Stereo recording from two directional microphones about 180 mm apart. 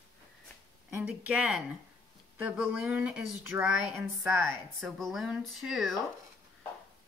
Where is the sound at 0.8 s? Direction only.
10° right (ahead or behind).